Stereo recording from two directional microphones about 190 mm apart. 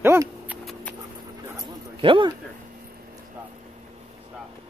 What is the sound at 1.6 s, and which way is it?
Dog, 25° right (ahead or behind).